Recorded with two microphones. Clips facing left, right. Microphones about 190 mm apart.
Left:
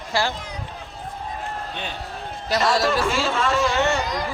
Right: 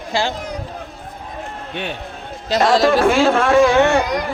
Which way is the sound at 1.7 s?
65° right (ahead or behind).